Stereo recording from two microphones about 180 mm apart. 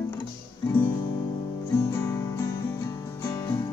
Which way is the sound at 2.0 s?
15° left (ahead or behind).